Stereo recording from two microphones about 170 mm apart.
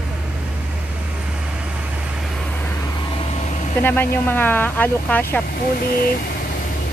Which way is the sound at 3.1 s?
35° left (ahead or behind).